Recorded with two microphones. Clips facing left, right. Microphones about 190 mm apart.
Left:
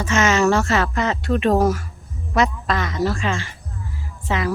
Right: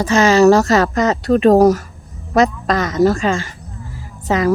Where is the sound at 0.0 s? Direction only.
35° right (ahead or behind).